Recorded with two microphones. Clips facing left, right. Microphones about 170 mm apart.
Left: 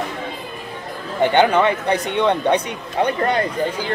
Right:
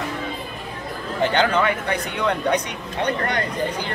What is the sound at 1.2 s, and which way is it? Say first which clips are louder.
Speech: left 5 dB; 20° left (ahead or behind).